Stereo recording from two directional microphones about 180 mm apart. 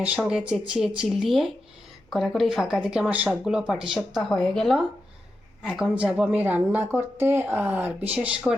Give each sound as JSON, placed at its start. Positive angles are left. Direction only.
{"t": 0.2, "sound": "speech", "side_deg": -5}